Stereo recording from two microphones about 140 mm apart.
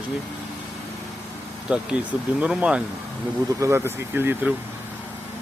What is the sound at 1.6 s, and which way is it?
Speech, 5° right (ahead or behind).